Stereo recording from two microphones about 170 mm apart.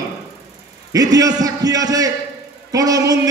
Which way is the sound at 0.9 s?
20° right (ahead or behind).